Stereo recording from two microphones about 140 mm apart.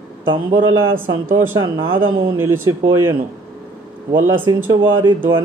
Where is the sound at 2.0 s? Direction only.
15° right (ahead or behind).